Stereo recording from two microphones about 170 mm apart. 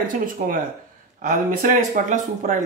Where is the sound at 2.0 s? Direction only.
50° right (ahead or behind).